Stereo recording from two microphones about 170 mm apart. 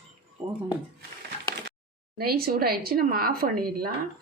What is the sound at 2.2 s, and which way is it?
Speech, 65° right (ahead or behind).